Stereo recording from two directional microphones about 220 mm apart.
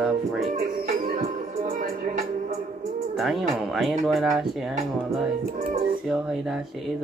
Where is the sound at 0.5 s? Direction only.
40° right (ahead or behind).